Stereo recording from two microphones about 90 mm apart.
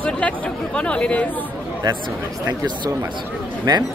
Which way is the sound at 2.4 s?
55° right (ahead or behind).